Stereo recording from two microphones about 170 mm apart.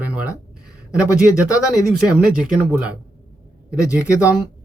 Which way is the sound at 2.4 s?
5° right (ahead or behind).